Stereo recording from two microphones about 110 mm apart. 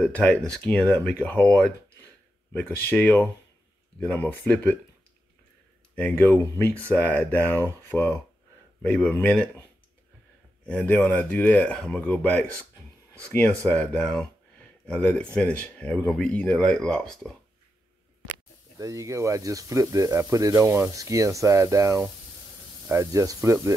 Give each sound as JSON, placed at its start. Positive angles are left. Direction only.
{"t": 0.0, "sound": "speech", "side_deg": 10}
{"t": 5.9, "sound": "speech", "side_deg": 15}
{"t": 10.6, "sound": "speech", "side_deg": 10}
{"t": 13.7, "sound": "speech", "side_deg": 10}
{"t": 18.8, "sound": "speech", "side_deg": -30}